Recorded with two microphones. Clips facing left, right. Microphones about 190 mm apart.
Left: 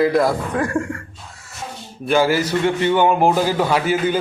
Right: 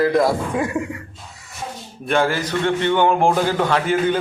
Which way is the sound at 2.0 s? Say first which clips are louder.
Left 3 dB; 5° left (ahead or behind).